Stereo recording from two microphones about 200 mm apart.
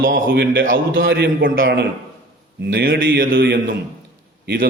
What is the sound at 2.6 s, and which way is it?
A man's voice, 50° right (ahead or behind).